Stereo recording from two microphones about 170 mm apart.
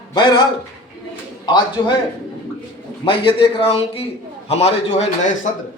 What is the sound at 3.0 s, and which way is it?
A man's voice, 30° left (ahead or behind).